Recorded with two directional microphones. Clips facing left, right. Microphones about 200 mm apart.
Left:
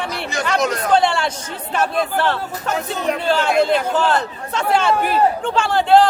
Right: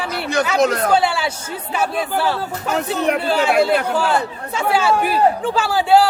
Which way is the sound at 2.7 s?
65° right (ahead or behind).